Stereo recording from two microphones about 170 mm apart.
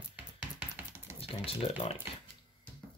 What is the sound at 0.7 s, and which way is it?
Chopping, 15° right (ahead or behind).